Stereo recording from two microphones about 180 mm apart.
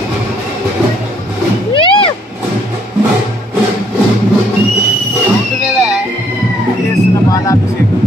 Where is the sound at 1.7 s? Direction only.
30° left (ahead or behind).